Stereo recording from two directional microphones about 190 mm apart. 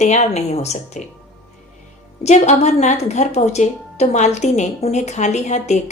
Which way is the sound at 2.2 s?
35° left (ahead or behind).